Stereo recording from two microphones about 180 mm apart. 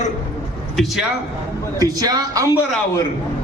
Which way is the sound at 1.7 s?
20° right (ahead or behind).